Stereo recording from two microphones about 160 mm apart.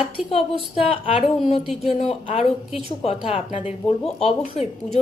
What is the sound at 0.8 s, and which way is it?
A woman's voice, 40° left (ahead or behind).